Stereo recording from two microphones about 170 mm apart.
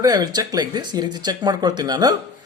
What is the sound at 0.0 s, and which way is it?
Speech, 25° right (ahead or behind).